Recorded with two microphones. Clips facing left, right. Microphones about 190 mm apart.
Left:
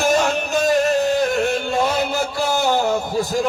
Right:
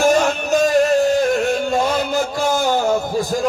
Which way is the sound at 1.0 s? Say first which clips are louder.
Right 2 dB; 40° right (ahead or behind).